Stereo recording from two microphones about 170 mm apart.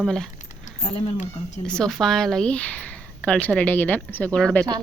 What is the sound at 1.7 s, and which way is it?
Speech, 5° left (ahead or behind).